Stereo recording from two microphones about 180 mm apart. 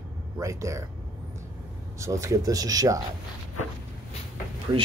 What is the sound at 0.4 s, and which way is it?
Speech, 15° right (ahead or behind).